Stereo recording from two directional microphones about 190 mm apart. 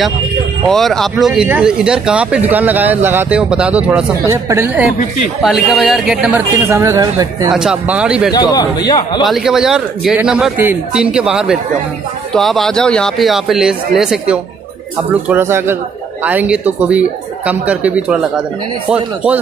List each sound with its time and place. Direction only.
0.7 s a man's voice: centre (ahead or behind)
6.5 s speech: 15° right (ahead or behind)
7.5 s a man's voice: 5° right (ahead or behind)
8.3 s a man's voice: 20° left (ahead or behind)
9.2 s a man's voice: centre (ahead or behind)